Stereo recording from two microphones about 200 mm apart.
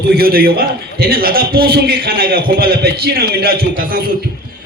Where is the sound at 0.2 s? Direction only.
50° right (ahead or behind).